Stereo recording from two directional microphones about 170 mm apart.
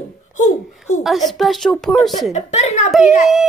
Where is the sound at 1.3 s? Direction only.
Centre (ahead or behind).